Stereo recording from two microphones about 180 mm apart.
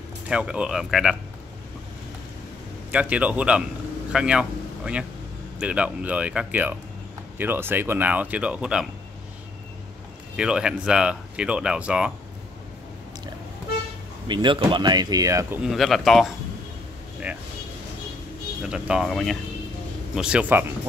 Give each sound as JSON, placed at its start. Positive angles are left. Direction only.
{"t": 0.3, "sound": "speech", "side_deg": -5}
{"t": 2.9, "sound": "speech", "side_deg": -5}
{"t": 10.3, "sound": "speech", "side_deg": -5}
{"t": 14.2, "sound": "speech", "side_deg": -25}
{"t": 15.6, "sound": "speech", "side_deg": 0}
{"t": 18.6, "sound": "speech", "side_deg": -5}